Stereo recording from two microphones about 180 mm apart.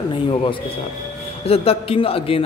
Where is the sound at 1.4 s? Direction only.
35° left (ahead or behind).